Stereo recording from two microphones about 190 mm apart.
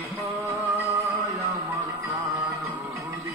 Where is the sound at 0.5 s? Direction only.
15° right (ahead or behind).